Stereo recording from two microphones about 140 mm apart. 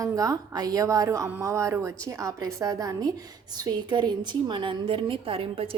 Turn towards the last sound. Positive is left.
turn(degrees=-45)  # may be behind; listen again after turning